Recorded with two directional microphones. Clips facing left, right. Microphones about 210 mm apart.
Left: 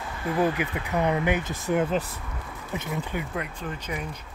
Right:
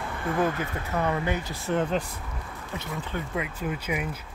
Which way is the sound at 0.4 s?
15° left (ahead or behind).